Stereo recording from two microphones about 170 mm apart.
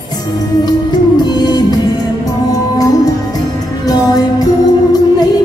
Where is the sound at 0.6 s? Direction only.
25° left (ahead or behind).